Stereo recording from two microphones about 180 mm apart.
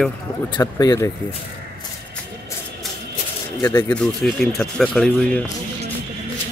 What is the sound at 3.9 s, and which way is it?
Speech, 5° left (ahead or behind).